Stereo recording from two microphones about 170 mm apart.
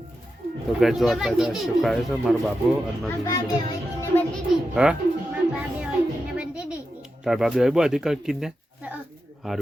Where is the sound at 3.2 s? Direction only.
20° left (ahead or behind).